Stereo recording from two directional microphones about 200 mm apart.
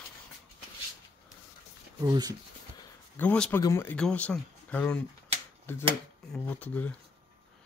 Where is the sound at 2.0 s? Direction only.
20° right (ahead or behind).